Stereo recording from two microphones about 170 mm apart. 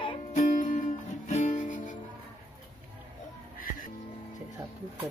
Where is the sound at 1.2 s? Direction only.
50° left (ahead or behind).